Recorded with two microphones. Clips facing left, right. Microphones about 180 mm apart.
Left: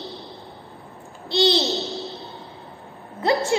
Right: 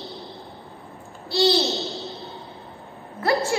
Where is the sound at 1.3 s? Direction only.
20° left (ahead or behind).